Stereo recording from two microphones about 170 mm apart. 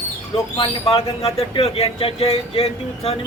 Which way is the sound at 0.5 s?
30° left (ahead or behind).